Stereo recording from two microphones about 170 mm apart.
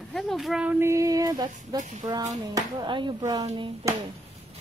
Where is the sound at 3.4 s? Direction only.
40° right (ahead or behind).